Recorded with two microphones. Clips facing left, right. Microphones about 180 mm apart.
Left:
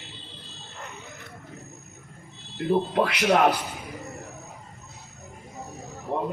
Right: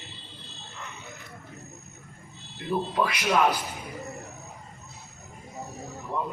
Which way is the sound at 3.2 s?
65° left (ahead or behind).